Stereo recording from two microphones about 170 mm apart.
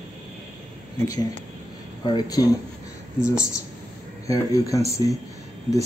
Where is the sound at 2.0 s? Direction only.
25° left (ahead or behind).